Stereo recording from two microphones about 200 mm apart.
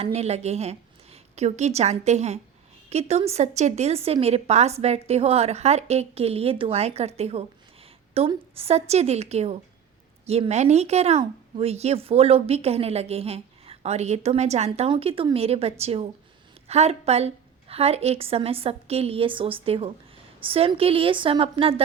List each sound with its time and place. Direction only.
0.0 s a woman's voice: 30° right (ahead or behind)